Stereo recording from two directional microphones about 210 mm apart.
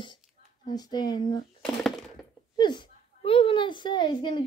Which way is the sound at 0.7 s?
20° left (ahead or behind).